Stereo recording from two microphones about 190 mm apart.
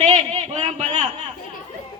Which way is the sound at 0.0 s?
35° right (ahead or behind).